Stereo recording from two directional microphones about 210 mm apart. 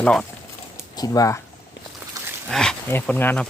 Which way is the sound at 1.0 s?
15° left (ahead or behind).